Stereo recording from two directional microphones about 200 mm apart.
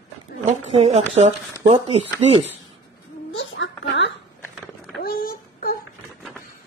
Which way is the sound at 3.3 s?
70° left (ahead or behind).